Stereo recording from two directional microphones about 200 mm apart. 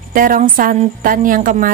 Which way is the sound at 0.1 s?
45° right (ahead or behind).